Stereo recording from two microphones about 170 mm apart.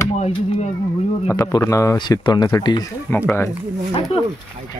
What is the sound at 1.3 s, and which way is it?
Speech, 20° left (ahead or behind).